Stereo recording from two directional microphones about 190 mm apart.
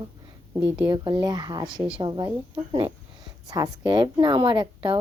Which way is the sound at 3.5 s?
20° right (ahead or behind).